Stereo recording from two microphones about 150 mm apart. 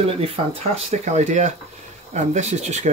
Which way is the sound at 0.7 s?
50° right (ahead or behind).